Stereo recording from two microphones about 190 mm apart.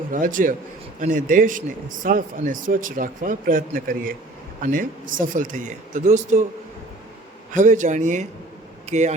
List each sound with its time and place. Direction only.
0.1 s speech: 45° right (ahead or behind)
7.5 s a man's voice: 40° right (ahead or behind)